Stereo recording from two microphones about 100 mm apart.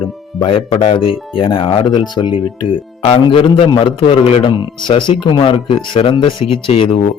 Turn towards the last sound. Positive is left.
turn(degrees=70)  # may be behind; listen again after turning